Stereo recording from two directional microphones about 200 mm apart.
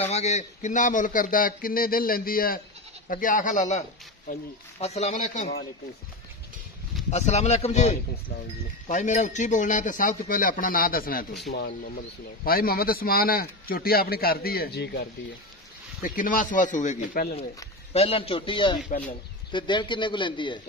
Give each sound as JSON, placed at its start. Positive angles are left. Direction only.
{"t": 0.0, "sound": "a man's voice", "side_deg": 35}
{"t": 7.1, "sound": "a man's voice", "side_deg": 35}
{"t": 16.2, "sound": "a man's voice", "side_deg": 40}
{"t": 17.9, "sound": "a man's voice", "side_deg": 30}
{"t": 18.9, "sound": "speech", "side_deg": 40}
{"t": 19.5, "sound": "a man's voice", "side_deg": 25}